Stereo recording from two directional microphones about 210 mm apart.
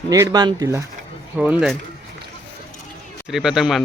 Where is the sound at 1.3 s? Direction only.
5° right (ahead or behind).